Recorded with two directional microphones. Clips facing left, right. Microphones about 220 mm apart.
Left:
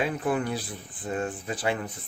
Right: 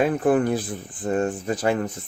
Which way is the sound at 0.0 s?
50° right (ahead or behind).